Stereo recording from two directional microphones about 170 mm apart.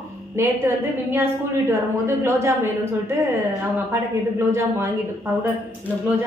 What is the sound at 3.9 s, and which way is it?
A woman's voice, 15° right (ahead or behind).